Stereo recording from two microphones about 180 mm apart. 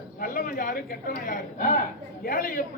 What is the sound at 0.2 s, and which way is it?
Speech, 50° left (ahead or behind).